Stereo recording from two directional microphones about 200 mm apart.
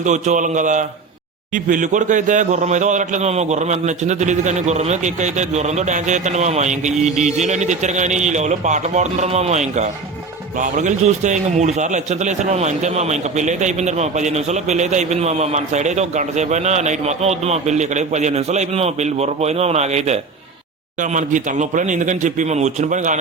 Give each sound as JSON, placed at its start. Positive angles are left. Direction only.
{"t": 0.0, "sound": "a man's voice", "side_deg": -35}